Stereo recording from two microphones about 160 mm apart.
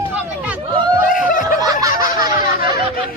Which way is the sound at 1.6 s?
25° right (ahead or behind).